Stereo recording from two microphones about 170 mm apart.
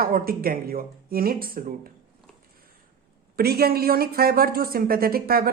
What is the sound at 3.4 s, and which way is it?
Speech, 65° right (ahead or behind).